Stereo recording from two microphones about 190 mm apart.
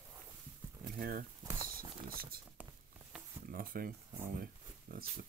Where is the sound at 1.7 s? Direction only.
50° right (ahead or behind).